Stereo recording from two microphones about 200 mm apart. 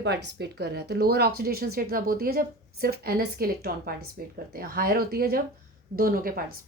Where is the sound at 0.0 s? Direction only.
55° right (ahead or behind).